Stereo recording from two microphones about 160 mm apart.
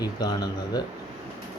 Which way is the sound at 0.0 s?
25° left (ahead or behind).